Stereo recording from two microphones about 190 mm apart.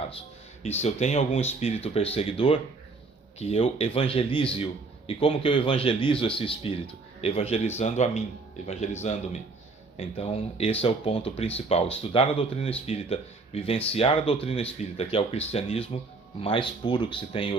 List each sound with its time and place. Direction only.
0.8 s a man's voice: 35° left (ahead or behind)